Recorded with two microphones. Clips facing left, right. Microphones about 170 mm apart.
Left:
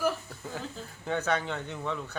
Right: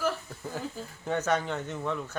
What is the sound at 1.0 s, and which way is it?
Speech, 5° right (ahead or behind).